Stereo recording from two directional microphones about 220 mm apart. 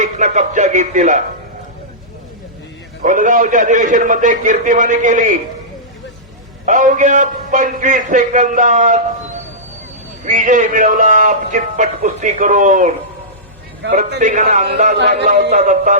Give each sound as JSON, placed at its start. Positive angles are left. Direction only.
{"t": 0.0, "sound": "music", "side_deg": -35}
{"t": 3.0, "sound": "a man's voice", "side_deg": -35}
{"t": 6.7, "sound": "a man's voice", "side_deg": -35}
{"t": 10.2, "sound": "a man's voice", "side_deg": -35}
{"t": 13.8, "sound": "music", "side_deg": -55}
{"t": 14.2, "sound": "a man's voice", "side_deg": -35}
{"t": 14.9, "sound": "music", "side_deg": -50}
{"t": 15.3, "sound": "a man's voice", "side_deg": -35}